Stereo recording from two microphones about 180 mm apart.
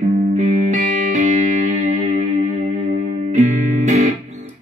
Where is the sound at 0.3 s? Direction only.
40° right (ahead or behind).